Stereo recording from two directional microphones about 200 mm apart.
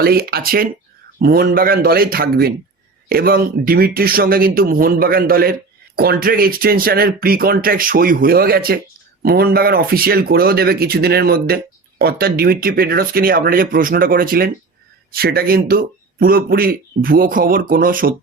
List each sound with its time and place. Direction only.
0.0 s speech: 50° right (ahead or behind)